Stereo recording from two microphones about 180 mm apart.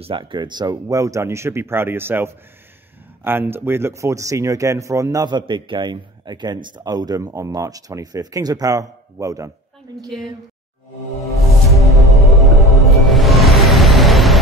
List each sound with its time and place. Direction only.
0.0 s speech: 25° right (ahead or behind)
10.0 s a woman's voice: centre (ahead or behind)
12.0 s music: centre (ahead or behind)